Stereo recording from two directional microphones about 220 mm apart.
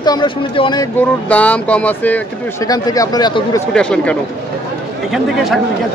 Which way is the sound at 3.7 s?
5° left (ahead or behind).